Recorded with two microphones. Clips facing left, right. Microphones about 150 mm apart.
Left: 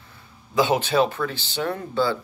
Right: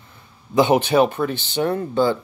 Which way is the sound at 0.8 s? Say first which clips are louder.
Right 4 dB; 15° right (ahead or behind).